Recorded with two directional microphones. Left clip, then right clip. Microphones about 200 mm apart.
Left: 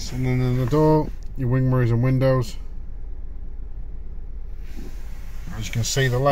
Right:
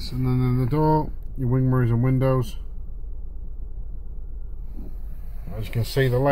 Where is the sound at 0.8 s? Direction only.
15° left (ahead or behind).